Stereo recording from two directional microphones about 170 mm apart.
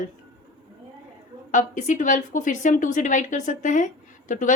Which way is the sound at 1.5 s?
50° left (ahead or behind).